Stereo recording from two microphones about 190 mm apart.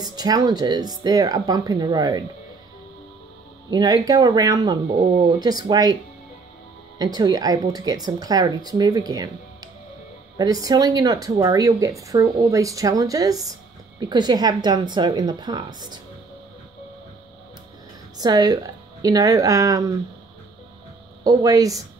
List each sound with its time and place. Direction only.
0.0 s speech: 20° right (ahead or behind)
3.7 s speech: 20° right (ahead or behind)
7.0 s speech: 20° right (ahead or behind)
10.3 s speech: 20° right (ahead or behind)
18.1 s speech: 20° right (ahead or behind)
21.2 s speech: 20° right (ahead or behind)